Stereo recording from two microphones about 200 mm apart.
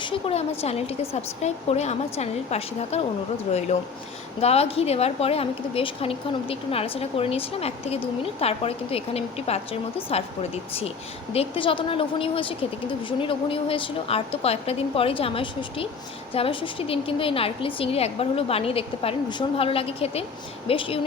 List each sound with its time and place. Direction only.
0.0 s speech: 25° left (ahead or behind)
4.4 s a woman's voice: 30° left (ahead or behind)